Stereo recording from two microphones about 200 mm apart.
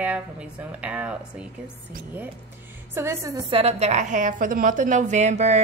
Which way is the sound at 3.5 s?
30° right (ahead or behind).